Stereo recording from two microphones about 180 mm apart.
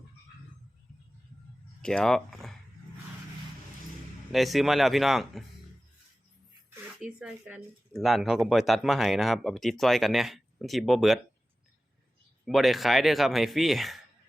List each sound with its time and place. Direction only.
1.8 s speech: 5° left (ahead or behind)
4.3 s speech: centre (ahead or behind)
7.0 s speech: 5° right (ahead or behind)
12.5 s speech: centre (ahead or behind)